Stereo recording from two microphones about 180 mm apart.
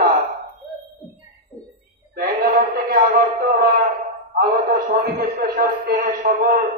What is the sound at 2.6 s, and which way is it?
A man's voice, 50° right (ahead or behind).